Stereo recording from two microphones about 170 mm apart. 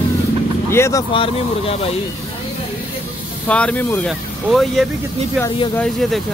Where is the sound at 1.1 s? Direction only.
30° left (ahead or behind).